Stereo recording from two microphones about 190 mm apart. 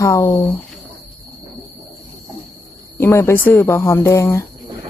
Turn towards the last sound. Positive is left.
turn(degrees=15)  # may be behind; listen again after turning